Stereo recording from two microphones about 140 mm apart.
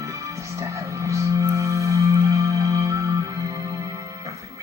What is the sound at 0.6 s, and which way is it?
Music, 20° right (ahead or behind).